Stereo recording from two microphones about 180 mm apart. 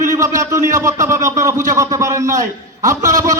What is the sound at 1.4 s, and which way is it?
Speech, 45° right (ahead or behind).